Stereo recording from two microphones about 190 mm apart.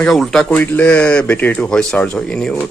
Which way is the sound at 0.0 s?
Centre (ahead or behind).